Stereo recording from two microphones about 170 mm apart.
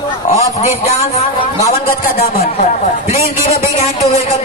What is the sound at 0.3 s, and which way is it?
Speech, 40° left (ahead or behind).